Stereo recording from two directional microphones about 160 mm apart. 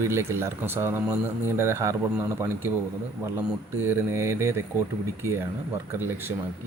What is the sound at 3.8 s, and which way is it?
Speech, 15° right (ahead or behind).